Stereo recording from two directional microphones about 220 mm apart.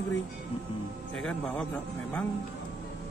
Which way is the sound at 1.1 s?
5° left (ahead or behind).